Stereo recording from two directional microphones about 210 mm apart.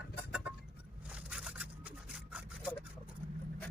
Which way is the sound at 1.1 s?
5° right (ahead or behind).